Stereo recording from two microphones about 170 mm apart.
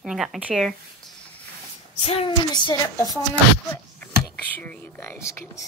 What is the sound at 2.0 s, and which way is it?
Speech, 35° left (ahead or behind).